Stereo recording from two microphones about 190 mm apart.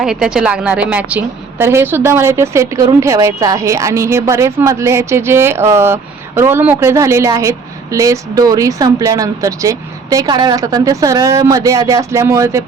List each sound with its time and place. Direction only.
0.0 s a woman's voice: 5° right (ahead or behind)